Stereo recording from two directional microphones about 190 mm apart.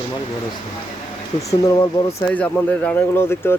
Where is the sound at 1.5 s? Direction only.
20° left (ahead or behind).